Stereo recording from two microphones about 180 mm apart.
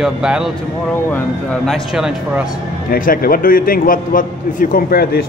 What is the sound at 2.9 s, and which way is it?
A man's voice, 55° left (ahead or behind).